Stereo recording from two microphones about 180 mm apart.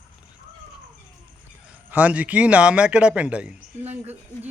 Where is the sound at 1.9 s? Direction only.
10° right (ahead or behind).